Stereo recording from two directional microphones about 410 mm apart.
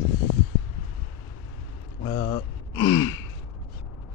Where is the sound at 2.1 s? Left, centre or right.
Centre.